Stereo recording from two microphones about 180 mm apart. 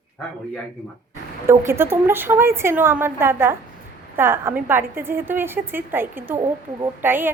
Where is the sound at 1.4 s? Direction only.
15° right (ahead or behind).